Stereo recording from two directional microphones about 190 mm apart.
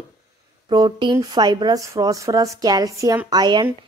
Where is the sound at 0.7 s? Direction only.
25° right (ahead or behind).